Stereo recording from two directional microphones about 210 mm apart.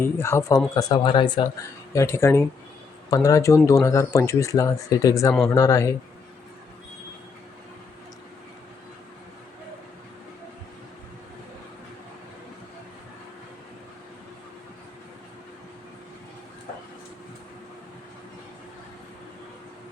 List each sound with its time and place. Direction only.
0.0 s speech: 10° left (ahead or behind)